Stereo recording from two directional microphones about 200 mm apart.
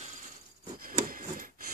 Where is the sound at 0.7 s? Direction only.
45° right (ahead or behind).